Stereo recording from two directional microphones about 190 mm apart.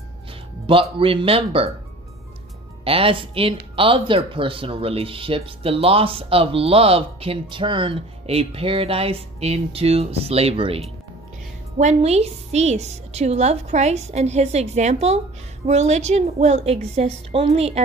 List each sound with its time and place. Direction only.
0.9 s speech: 30° right (ahead or behind)
2.8 s a woman's voice: 30° right (ahead or behind)